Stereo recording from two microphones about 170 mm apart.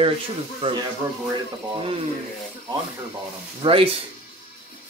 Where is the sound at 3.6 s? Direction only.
35° right (ahead or behind).